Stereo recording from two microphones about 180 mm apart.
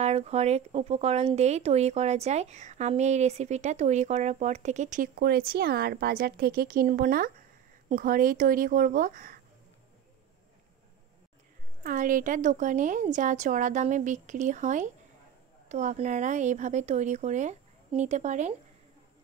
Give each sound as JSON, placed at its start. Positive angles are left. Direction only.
{"t": 0.0, "sound": "a woman's voice", "side_deg": -35}
{"t": 11.8, "sound": "a woman's voice", "side_deg": -50}